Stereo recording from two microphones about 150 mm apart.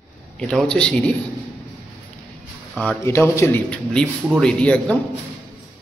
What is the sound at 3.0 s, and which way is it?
A man's voice, 15° left (ahead or behind).